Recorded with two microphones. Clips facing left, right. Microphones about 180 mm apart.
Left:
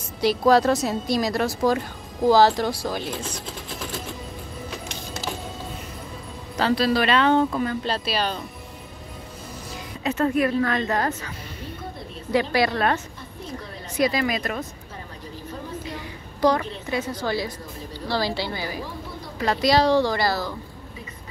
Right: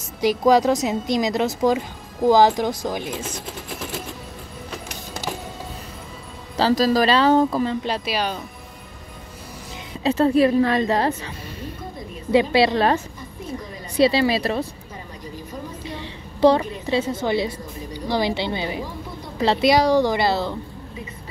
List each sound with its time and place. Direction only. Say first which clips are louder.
0.2 s a woman's voice: right 1 dB; 15° right (ahead or behind)
6.5 s speech: right 3 dB; 35° right (ahead or behind)
7.8 s a woman's voice: right 1 dB; 15° right (ahead or behind)
10.0 s a woman's voice: right 5 dB; 30° right (ahead or behind)
13.9 s speech: right 5 dB; 30° right (ahead or behind)
16.0 s a woman's voice: right 6 dB; 25° right (ahead or behind)